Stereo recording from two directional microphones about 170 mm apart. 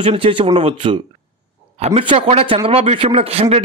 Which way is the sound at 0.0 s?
30° right (ahead or behind).